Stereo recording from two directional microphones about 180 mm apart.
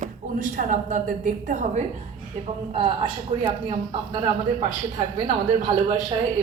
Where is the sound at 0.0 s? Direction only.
50° right (ahead or behind).